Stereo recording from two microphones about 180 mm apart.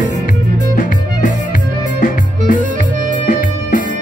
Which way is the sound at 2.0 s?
50° left (ahead or behind).